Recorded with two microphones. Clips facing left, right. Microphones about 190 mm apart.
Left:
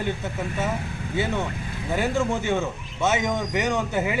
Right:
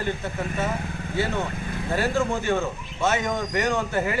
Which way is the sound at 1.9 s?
20° left (ahead or behind).